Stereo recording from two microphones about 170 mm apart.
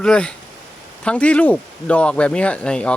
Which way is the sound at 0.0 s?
5° left (ahead or behind).